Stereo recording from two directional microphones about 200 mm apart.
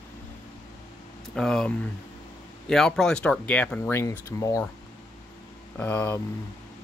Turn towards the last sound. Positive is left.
turn(degrees=10)  # may be behind; listen again after turning